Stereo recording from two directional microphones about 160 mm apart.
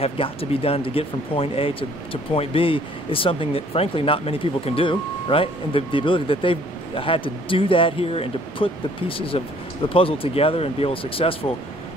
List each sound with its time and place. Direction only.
0.0 s speech: 35° left (ahead or behind)